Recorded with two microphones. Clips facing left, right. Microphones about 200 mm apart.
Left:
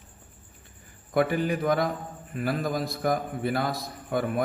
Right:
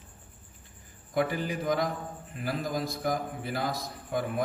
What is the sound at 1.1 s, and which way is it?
A man's voice, 60° left (ahead or behind).